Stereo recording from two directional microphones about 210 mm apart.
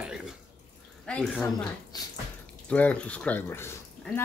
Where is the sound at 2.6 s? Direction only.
5° left (ahead or behind).